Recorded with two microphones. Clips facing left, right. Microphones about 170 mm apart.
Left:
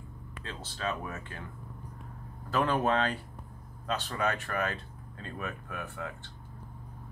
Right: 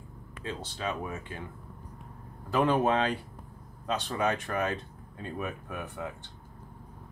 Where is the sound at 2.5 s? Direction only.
15° right (ahead or behind).